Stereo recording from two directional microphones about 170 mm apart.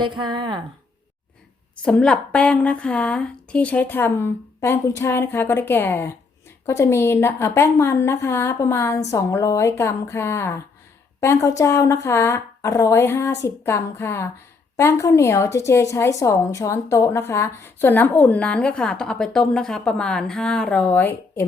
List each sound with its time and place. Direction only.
0.0 s speech: 25° right (ahead or behind)
1.7 s a woman's voice: 5° left (ahead or behind)